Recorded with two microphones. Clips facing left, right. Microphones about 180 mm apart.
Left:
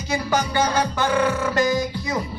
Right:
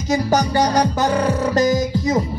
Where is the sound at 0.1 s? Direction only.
40° right (ahead or behind).